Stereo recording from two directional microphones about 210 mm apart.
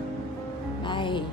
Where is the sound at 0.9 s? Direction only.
20° left (ahead or behind).